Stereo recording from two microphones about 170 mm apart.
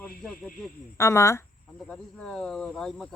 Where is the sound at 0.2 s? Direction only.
5° left (ahead or behind).